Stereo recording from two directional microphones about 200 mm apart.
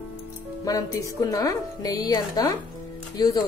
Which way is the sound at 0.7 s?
15° left (ahead or behind).